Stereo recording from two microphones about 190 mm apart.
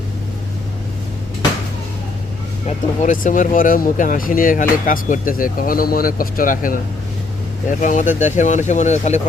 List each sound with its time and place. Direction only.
2.6 s speech: 40° left (ahead or behind)
7.8 s speech: 40° left (ahead or behind)